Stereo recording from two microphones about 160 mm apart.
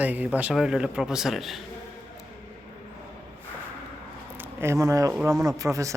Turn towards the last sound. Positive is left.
turn(degrees=-20)  # may be behind; listen again after turning